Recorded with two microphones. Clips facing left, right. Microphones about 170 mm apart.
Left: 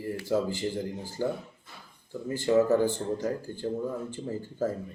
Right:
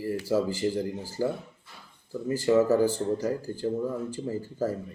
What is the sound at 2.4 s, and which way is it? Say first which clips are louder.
Speech: right 1 dB; 5° right (ahead or behind).